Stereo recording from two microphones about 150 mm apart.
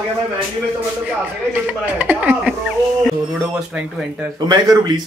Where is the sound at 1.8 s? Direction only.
10° right (ahead or behind).